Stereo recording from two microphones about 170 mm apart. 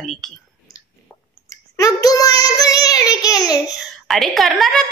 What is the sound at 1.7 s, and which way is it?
Child singing, 20° left (ahead or behind).